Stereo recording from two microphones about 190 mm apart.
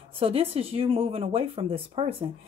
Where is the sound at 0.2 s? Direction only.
30° right (ahead or behind).